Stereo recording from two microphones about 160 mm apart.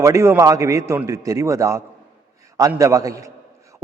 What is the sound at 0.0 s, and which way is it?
A man's voice, 15° right (ahead or behind).